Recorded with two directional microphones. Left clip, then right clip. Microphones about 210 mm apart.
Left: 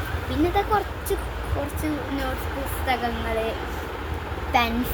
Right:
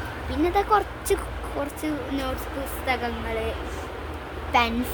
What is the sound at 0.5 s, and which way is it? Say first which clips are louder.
Speech: right 5 dB; 30° right (ahead or behind).